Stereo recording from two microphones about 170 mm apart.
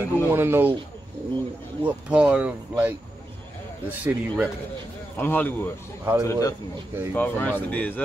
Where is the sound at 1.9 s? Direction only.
5° right (ahead or behind).